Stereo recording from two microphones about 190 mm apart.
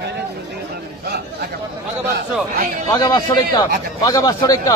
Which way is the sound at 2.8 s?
20° left (ahead or behind).